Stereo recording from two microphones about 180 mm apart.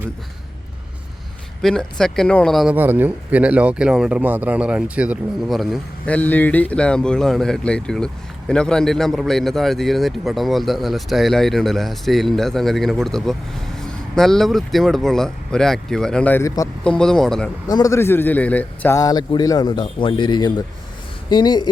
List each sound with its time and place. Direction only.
1.6 s speech: 5° left (ahead or behind)
2.7 s speech: 10° right (ahead or behind)
17.7 s a man's voice: 20° left (ahead or behind)